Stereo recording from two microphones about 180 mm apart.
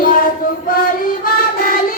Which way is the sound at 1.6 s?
50° left (ahead or behind).